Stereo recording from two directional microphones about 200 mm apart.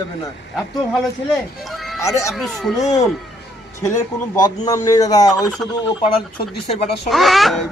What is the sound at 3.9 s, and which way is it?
Speech, 15° left (ahead or behind).